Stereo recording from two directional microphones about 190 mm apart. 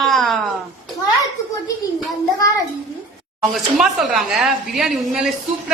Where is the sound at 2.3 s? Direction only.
15° left (ahead or behind).